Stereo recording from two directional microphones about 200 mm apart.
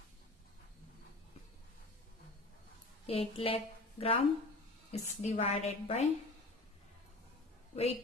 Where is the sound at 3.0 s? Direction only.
30° left (ahead or behind).